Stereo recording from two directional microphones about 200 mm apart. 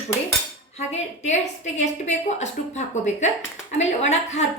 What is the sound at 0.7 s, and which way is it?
A woman's voice, 35° left (ahead or behind).